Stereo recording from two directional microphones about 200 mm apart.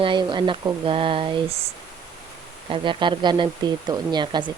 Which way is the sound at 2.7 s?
25° right (ahead or behind).